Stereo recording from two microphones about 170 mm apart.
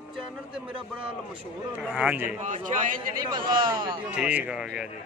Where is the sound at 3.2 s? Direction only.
25° right (ahead or behind).